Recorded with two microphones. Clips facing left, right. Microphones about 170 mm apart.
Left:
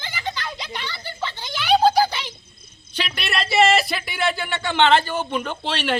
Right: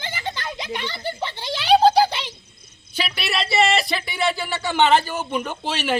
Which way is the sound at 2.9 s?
5° right (ahead or behind).